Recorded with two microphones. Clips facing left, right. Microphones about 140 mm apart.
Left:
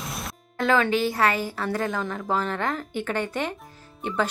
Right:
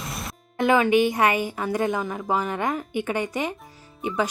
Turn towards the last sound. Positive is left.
turn(degrees=-10)  # may be behind; listen again after turning